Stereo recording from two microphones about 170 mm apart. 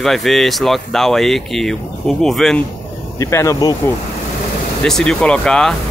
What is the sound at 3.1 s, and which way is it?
Speech, 15° left (ahead or behind).